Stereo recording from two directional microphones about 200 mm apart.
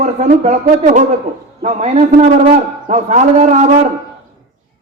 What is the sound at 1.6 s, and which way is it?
A man's voice, 35° right (ahead or behind).